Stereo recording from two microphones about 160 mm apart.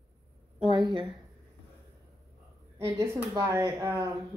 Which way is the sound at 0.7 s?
30° right (ahead or behind).